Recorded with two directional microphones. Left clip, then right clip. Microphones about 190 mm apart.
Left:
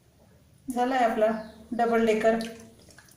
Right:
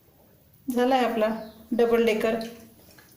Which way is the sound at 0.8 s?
45° right (ahead or behind).